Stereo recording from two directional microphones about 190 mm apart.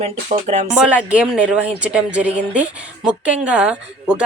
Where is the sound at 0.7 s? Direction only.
5° right (ahead or behind).